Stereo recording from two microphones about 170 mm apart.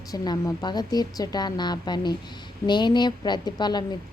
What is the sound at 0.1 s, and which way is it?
A woman's voice, 25° left (ahead or behind).